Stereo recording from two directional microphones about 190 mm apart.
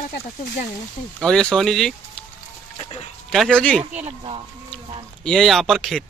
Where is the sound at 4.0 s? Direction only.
30° right (ahead or behind).